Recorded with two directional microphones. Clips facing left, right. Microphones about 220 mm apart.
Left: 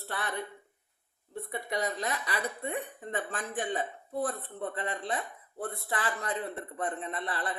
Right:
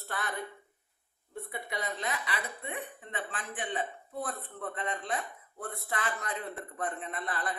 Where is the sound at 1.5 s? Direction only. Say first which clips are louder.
Left 5 dB; 40° left (ahead or behind).